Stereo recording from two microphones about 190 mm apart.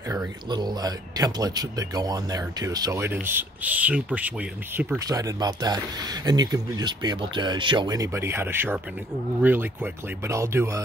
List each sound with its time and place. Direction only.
0.1 s speech: 20° right (ahead or behind)
4.9 s speech: 20° right (ahead or behind)